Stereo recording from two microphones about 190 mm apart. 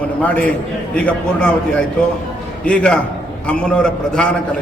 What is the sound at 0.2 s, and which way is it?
A man's voice, 5° left (ahead or behind).